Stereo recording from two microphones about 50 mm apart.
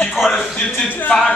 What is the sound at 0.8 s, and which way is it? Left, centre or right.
Music, left.